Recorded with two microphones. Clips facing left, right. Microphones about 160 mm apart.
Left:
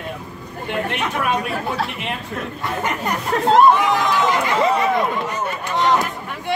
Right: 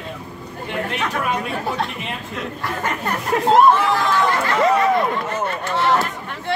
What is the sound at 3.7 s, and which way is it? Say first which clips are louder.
Speech: left 1 dB; 15° left (ahead or behind).